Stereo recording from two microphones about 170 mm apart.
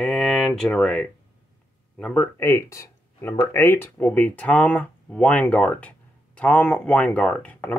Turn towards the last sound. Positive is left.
turn(degrees=5)  # may be behind; listen again after turning